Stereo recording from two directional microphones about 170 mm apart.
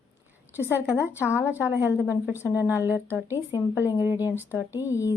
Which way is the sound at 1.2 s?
15° left (ahead or behind).